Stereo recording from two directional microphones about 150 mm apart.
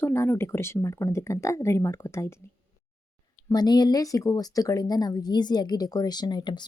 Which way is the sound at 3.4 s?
25° left (ahead or behind).